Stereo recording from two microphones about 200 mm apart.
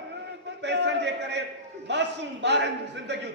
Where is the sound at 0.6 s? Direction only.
60° right (ahead or behind).